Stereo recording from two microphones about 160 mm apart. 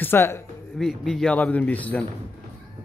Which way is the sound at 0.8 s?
Centre (ahead or behind).